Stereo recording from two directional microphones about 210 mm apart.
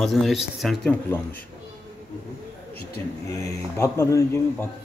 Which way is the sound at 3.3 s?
15° left (ahead or behind).